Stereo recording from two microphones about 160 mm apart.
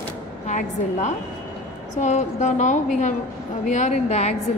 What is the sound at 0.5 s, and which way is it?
A woman's voice, 45° left (ahead or behind).